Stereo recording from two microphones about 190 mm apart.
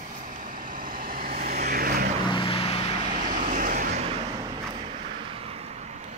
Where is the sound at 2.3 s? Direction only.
30° left (ahead or behind).